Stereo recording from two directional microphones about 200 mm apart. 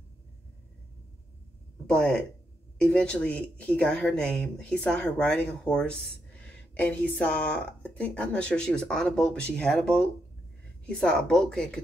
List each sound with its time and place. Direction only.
2.0 s speech: 5° left (ahead or behind)